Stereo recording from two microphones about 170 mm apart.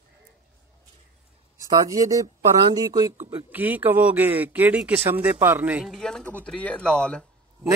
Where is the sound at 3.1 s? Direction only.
45° right (ahead or behind).